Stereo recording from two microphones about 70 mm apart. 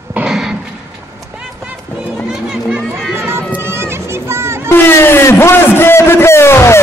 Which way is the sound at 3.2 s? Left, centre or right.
Right.